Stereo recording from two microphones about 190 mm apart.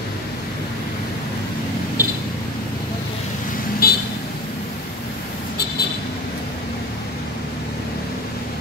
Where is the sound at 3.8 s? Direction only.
50° left (ahead or behind).